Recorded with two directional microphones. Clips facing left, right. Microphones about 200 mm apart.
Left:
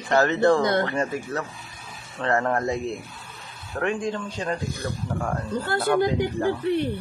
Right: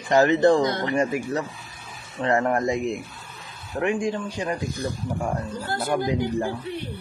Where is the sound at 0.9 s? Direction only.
15° right (ahead or behind).